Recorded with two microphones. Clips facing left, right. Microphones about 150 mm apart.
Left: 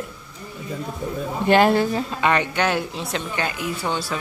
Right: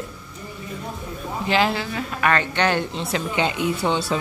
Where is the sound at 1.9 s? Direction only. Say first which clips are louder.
Left 1 dB; 25° left (ahead or behind).